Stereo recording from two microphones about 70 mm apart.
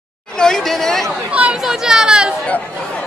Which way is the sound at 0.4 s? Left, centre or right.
Centre.